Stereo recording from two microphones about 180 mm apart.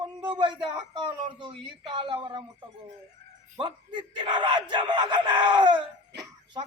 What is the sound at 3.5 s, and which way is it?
A man's voice, 25° right (ahead or behind).